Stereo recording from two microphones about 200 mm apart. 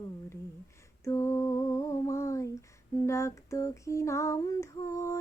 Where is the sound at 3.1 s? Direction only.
15° left (ahead or behind).